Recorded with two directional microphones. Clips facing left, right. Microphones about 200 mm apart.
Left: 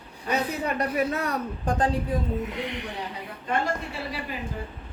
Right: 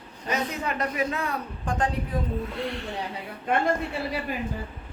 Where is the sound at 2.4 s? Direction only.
20° left (ahead or behind).